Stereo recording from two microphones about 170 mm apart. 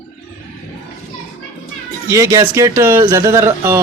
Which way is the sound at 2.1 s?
20° right (ahead or behind).